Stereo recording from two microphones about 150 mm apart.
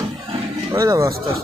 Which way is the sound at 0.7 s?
20° right (ahead or behind).